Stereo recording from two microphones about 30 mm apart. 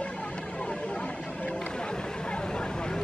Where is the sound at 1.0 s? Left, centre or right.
Left.